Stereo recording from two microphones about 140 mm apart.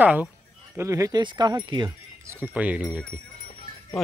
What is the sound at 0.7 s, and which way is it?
Speech, 20° right (ahead or behind).